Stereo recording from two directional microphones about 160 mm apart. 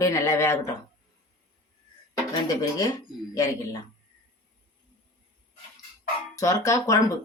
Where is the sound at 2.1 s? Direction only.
25° left (ahead or behind).